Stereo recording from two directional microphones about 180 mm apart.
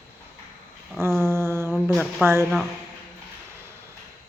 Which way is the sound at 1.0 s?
15° right (ahead or behind).